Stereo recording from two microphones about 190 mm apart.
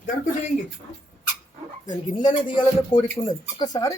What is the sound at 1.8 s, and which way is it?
Speech, 25° left (ahead or behind).